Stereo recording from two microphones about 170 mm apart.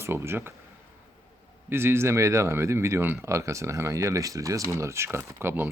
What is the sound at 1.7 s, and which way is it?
Speech, 15° right (ahead or behind).